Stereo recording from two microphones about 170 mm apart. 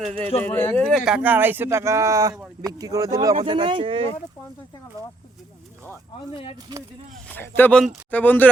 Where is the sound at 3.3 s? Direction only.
30° right (ahead or behind).